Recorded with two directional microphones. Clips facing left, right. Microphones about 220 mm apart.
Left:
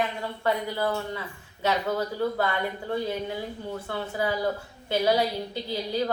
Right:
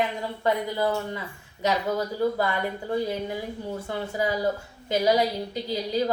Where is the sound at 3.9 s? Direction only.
15° right (ahead or behind).